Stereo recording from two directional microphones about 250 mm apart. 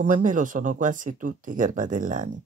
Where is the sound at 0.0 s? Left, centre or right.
Right.